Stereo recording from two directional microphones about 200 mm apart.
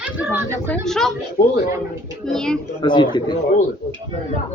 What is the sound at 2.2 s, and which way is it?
Speech, 5° left (ahead or behind).